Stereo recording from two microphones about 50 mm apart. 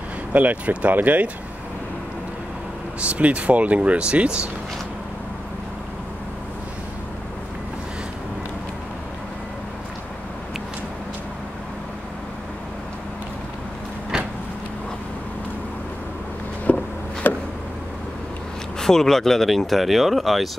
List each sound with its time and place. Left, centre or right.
0.3 s speech: right
3.0 s speech: right
14.1 s vehicle: centre
16.7 s a sound: left
18.8 s speech: centre